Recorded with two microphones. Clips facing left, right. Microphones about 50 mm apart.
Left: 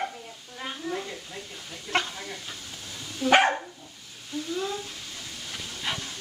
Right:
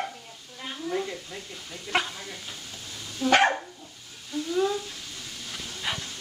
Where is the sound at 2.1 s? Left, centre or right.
Centre.